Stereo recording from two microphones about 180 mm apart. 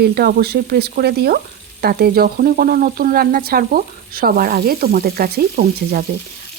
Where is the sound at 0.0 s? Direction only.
60° right (ahead or behind).